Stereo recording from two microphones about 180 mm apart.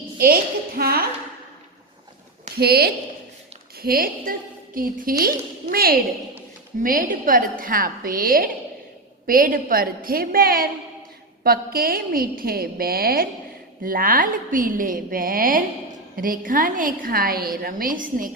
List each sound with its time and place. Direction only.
0.2 s a woman's voice: 55° right (ahead or behind)
2.6 s a woman's voice: 60° right (ahead or behind)